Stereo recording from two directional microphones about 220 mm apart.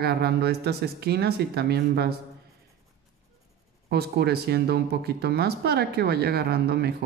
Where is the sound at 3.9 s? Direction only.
45° right (ahead or behind).